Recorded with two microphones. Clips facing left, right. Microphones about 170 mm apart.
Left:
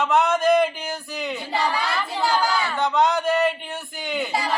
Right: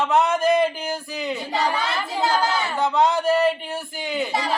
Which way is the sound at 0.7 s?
30° right (ahead or behind).